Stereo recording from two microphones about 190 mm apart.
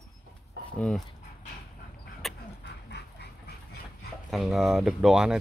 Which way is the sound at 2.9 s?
60° left (ahead or behind).